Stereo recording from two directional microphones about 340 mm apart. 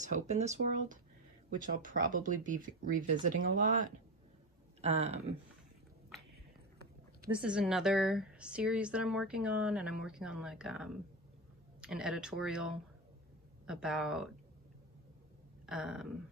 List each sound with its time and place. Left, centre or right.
0.0 s speech: right
7.3 s speech: centre
15.6 s a sound: centre